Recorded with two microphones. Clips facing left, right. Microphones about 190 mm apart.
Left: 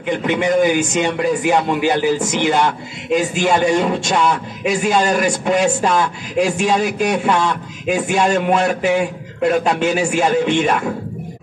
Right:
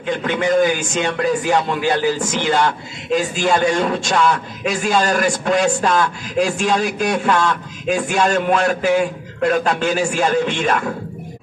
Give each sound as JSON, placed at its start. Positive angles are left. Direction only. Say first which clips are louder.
{"t": 0.0, "sound": "a man's voice", "louder": "left 2 dB", "side_deg": 20}
{"t": 6.8, "sound": "a man's voice", "louder": "left 2 dB", "side_deg": 5}
{"t": 7.2, "sound": "a man's voice", "louder": "even", "side_deg": 20}